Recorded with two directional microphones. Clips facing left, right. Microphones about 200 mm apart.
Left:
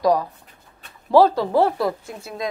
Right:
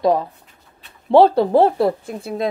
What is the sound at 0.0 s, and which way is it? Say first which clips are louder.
Speech: right 2 dB; 25° right (ahead or behind).